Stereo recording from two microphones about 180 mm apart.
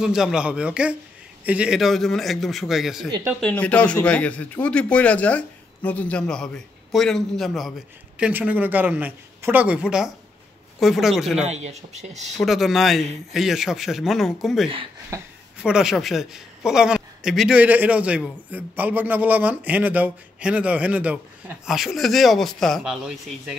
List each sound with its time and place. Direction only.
0.0 s a man's voice: 5° right (ahead or behind)
11.4 s speech: 40° right (ahead or behind)
12.4 s a man's voice: centre (ahead or behind)
15.0 s a sound: 15° right (ahead or behind)
15.6 s a man's voice: 5° right (ahead or behind)